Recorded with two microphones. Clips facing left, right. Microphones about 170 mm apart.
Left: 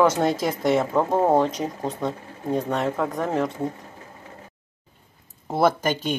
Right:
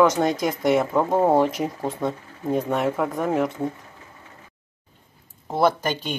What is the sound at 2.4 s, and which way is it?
Speech, 10° right (ahead or behind).